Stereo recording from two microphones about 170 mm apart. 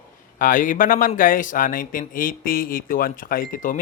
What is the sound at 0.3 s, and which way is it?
Speech, 55° left (ahead or behind).